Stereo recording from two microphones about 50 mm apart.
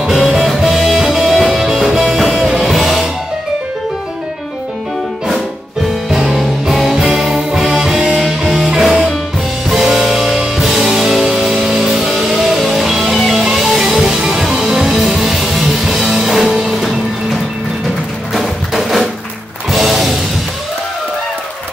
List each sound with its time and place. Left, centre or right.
0.0 s music: centre
6.2 s music: centre